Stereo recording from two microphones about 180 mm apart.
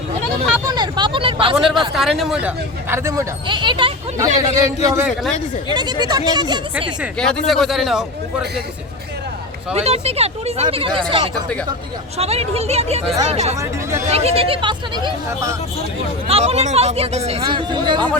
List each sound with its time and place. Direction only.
0.7 s speech: 25° right (ahead or behind)
1.9 s a man's voice: centre (ahead or behind)
2.9 s a man's voice: 15° right (ahead or behind)
7.4 s a man's voice: centre (ahead or behind)
9.7 s speech: 35° right (ahead or behind)
12.1 s speech: 35° right (ahead or behind); by 15.5 s 20° right (ahead or behind)
16.2 s speech: 35° right (ahead or behind)
17.4 s speech: 25° right (ahead or behind)